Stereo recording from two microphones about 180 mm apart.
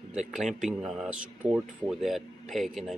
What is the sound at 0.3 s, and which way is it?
Speech, centre (ahead or behind).